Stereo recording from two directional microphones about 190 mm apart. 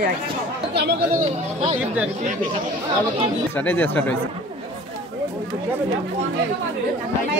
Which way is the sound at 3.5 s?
10° left (ahead or behind).